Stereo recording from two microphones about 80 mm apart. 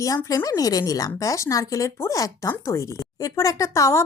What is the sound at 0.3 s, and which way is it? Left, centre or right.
Speech, left.